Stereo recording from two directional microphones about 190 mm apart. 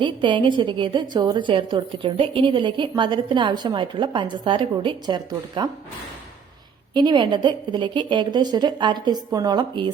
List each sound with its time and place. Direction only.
0.0 s a woman's voice: 25° right (ahead or behind)
6.9 s a woman's voice: 25° right (ahead or behind)